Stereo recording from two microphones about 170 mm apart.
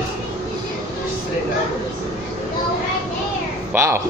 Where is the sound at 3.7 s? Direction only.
15° right (ahead or behind).